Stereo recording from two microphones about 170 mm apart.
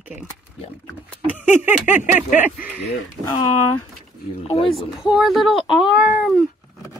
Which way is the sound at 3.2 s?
25° left (ahead or behind).